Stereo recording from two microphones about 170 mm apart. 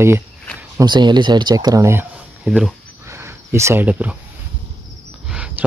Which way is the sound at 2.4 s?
5° right (ahead or behind).